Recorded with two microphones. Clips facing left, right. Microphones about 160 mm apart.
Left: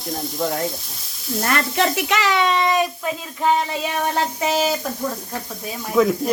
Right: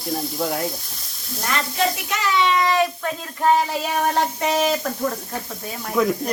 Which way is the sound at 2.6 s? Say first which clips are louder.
Even; 15° left (ahead or behind).